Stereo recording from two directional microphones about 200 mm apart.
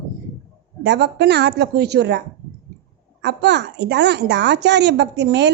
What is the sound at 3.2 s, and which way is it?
A woman's voice, 60° right (ahead or behind).